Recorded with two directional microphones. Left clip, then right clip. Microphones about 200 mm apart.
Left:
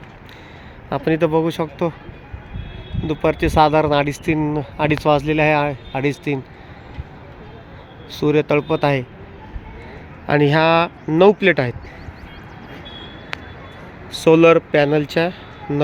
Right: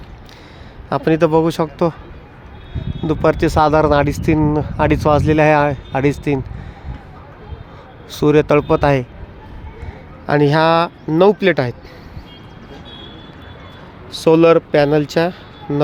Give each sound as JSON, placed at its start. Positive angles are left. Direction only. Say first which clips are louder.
{"t": 0.9, "sound": "speech", "louder": "right 4 dB", "side_deg": -15}
{"t": 3.1, "sound": "speech", "louder": "right 4 dB", "side_deg": -15}
{"t": 8.1, "sound": "speech", "louder": "right 4 dB", "side_deg": -15}
{"t": 10.2, "sound": "speech", "louder": "right 2 dB", "side_deg": -10}
{"t": 14.1, "sound": "speech", "louder": "right 1 dB", "side_deg": -5}